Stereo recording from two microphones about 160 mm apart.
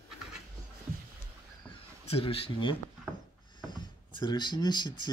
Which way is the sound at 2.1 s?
35° left (ahead or behind).